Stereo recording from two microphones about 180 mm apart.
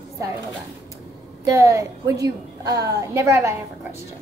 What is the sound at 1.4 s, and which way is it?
A woman's voice, 15° right (ahead or behind).